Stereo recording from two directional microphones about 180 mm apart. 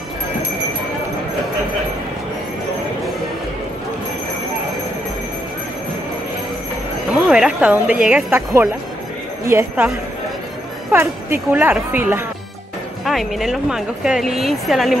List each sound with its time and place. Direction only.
7.2 s a woman's voice: 5° right (ahead or behind)
10.9 s a woman's voice: 10° right (ahead or behind)
13.0 s speech: centre (ahead or behind)